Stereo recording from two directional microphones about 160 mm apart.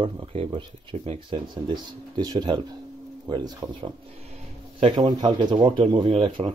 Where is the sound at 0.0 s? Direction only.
35° right (ahead or behind).